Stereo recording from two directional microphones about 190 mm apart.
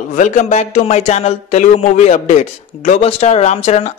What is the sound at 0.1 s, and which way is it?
Speech, 40° left (ahead or behind).